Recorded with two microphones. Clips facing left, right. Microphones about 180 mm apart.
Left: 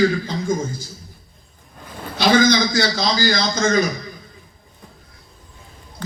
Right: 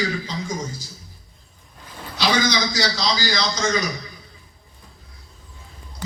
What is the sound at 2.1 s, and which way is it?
A man's voice, 55° left (ahead or behind).